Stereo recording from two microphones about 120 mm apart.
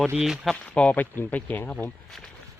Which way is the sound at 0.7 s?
10° left (ahead or behind).